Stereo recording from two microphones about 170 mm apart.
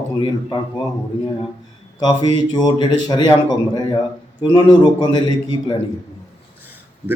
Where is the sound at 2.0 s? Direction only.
25° left (ahead or behind).